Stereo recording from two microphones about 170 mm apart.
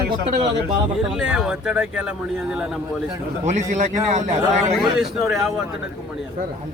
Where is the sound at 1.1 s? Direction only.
5° right (ahead or behind).